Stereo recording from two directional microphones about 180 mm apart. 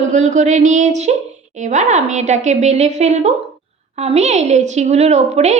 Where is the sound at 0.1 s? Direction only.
40° right (ahead or behind).